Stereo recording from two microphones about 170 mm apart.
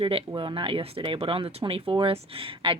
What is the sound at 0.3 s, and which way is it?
Speech, 30° right (ahead or behind).